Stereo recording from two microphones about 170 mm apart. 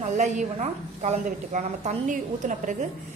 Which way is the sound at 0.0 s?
45° right (ahead or behind).